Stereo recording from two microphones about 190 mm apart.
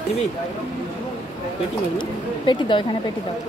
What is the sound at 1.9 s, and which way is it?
Speech, 25° left (ahead or behind).